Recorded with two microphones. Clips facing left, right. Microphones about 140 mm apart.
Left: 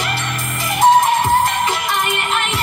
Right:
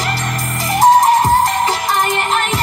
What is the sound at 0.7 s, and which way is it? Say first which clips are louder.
Music: right 3 dB; 40° right (ahead or behind).